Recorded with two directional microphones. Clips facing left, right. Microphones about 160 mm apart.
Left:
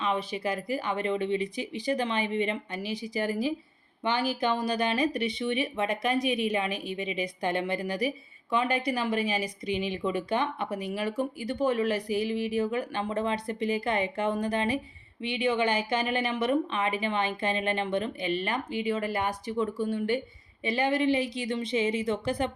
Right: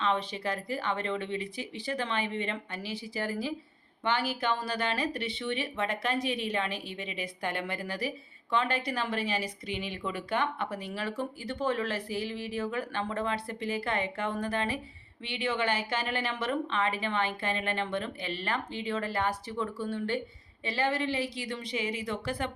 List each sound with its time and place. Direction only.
0.0 s a woman's voice: 10° left (ahead or behind)